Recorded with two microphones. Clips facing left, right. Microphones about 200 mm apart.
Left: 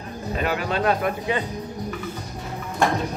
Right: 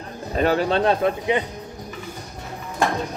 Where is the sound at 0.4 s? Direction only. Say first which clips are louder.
Right 6 dB; 35° right (ahead or behind).